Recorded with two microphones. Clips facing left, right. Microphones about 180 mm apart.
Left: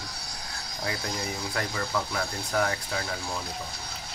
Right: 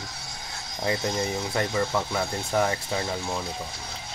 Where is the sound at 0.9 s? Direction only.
25° right (ahead or behind).